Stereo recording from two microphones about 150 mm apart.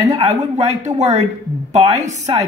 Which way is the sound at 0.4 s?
50° right (ahead or behind).